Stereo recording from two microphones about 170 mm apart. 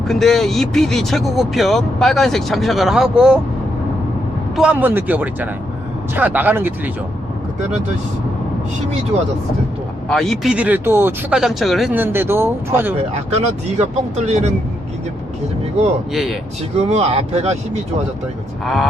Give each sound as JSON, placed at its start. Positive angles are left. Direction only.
{"t": 0.1, "sound": "speech", "side_deg": 0}
{"t": 4.5, "sound": "speech", "side_deg": -5}
{"t": 10.1, "sound": "speech", "side_deg": 0}
{"t": 11.3, "sound": "speech", "side_deg": 0}
{"t": 11.9, "sound": "speech", "side_deg": -15}
{"t": 13.1, "sound": "speech", "side_deg": -40}
{"t": 16.1, "sound": "speech", "side_deg": 0}
{"t": 16.7, "sound": "speech", "side_deg": -40}
{"t": 18.6, "sound": "speech", "side_deg": 0}